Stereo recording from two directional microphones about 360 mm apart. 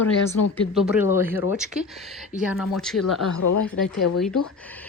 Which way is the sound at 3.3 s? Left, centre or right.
Left.